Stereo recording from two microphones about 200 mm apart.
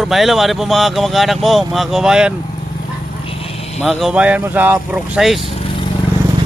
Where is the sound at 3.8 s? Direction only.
Centre (ahead or behind).